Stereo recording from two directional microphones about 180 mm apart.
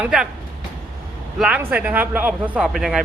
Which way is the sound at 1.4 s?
10° right (ahead or behind).